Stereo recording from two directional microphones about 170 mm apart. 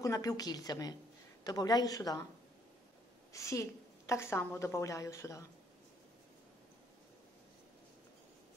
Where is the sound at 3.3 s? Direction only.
20° left (ahead or behind).